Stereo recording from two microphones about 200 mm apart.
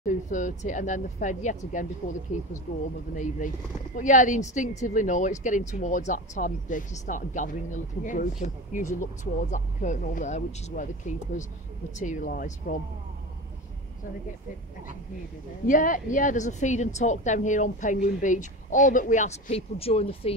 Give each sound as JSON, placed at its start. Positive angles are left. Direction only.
{"t": 0.0, "sound": "a woman's voice", "side_deg": 40}
{"t": 2.7, "sound": "speech", "side_deg": 70}
{"t": 3.9, "sound": "a woman's voice", "side_deg": 40}
{"t": 15.6, "sound": "a woman's voice", "side_deg": 40}